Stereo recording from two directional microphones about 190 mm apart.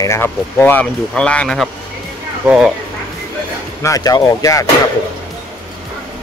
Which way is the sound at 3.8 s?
20° left (ahead or behind).